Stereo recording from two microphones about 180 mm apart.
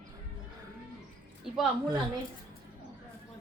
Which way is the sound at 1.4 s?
5° right (ahead or behind).